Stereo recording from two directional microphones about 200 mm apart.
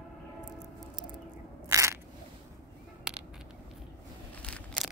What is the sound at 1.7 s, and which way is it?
Crushing, 15° right (ahead or behind).